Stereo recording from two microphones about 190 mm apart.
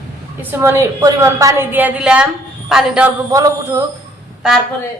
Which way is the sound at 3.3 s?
15° right (ahead or behind).